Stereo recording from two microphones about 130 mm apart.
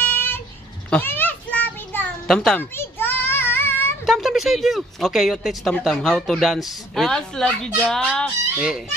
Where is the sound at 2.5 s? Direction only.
15° left (ahead or behind).